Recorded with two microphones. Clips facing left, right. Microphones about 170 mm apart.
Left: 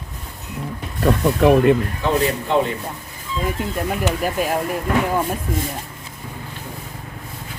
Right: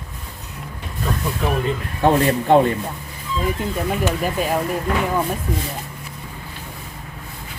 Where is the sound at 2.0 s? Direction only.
50° right (ahead or behind).